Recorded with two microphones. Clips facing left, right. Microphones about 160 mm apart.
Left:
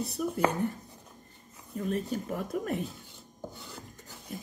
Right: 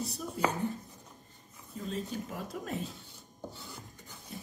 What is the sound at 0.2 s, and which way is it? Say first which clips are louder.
Speech: left 9 dB; 65° left (ahead or behind).